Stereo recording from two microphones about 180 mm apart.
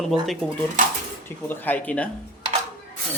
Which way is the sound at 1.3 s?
10° left (ahead or behind).